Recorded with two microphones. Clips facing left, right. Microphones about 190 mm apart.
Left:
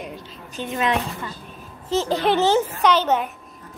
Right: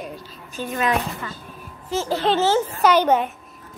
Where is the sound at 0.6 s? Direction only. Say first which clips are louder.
Even; 25° left (ahead or behind).